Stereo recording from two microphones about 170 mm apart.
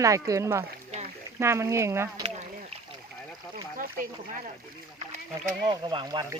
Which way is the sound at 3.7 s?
55° right (ahead or behind).